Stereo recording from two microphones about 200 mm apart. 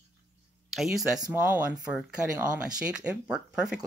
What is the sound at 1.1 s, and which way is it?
Speech, 20° right (ahead or behind).